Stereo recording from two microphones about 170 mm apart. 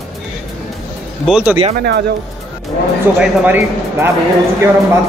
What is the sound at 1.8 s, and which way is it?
Speech, 70° right (ahead or behind).